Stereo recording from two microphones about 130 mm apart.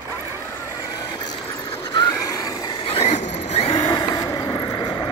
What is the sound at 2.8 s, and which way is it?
Printer, 55° left (ahead or behind).